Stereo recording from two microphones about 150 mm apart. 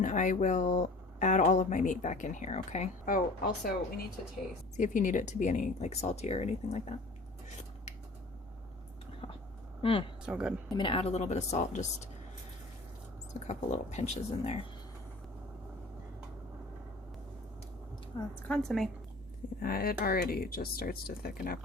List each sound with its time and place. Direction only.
0.0 s speech: 55° left (ahead or behind); by 4.0 s 90° left
4.8 s speech: 55° left (ahead or behind)
9.2 s vehicle: 35° left (ahead or behind)
9.8 s speech: 40° left (ahead or behind)
10.2 s a woman's voice: 5° right (ahead or behind)
10.8 s speech: 35° left (ahead or behind)
13.4 s speech: 50° left (ahead or behind)
18.4 s a woman's voice: 5° left (ahead or behind)
19.6 s speech: 80° left